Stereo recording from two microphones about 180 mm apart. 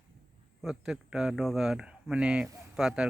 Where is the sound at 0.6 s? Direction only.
Centre (ahead or behind).